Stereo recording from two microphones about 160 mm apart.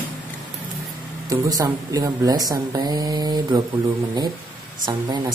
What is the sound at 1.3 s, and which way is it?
Speech, 25° right (ahead or behind).